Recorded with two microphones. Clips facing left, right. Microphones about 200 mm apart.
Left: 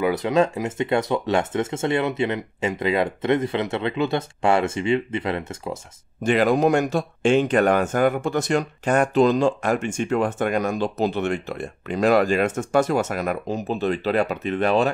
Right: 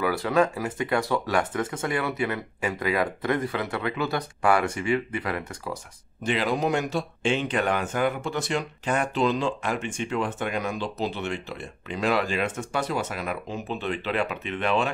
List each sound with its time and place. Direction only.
0.0 s speech: 20° left (ahead or behind)
6.2 s speech: 50° left (ahead or behind)